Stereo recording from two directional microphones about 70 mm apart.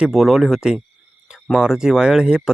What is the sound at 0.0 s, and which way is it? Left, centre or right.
Speech, centre.